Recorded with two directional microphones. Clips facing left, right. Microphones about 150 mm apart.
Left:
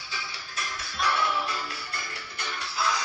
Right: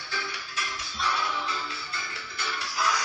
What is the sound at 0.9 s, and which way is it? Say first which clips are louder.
Music: left 3 dB; 60° left (ahead or behind).